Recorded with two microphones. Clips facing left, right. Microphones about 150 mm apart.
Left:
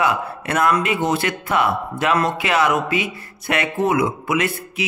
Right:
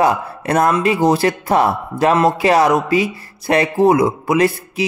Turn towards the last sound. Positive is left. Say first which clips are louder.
# right 6 dB
turn(degrees=-35)  # may be behind; listen again after turning